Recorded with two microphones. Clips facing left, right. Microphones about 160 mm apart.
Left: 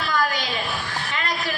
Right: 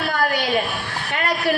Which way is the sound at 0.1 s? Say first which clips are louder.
Right 4 dB; 60° right (ahead or behind).